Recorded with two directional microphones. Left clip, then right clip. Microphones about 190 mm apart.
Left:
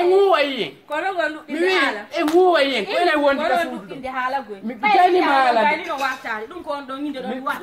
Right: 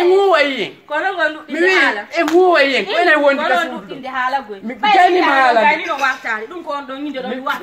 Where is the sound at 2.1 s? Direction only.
5° right (ahead or behind).